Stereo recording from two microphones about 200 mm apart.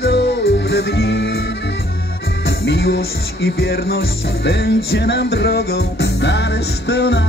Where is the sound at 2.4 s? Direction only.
55° left (ahead or behind).